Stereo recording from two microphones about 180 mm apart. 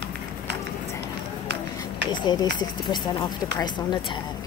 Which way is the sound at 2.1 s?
25° left (ahead or behind).